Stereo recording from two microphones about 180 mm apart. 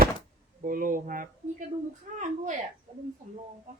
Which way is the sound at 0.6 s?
50° right (ahead or behind).